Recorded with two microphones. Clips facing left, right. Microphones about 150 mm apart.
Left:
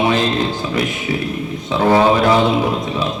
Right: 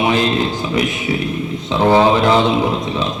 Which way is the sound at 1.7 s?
20° right (ahead or behind).